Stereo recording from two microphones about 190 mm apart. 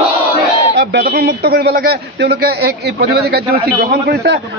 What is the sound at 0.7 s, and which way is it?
A man's voice, 60° right (ahead or behind).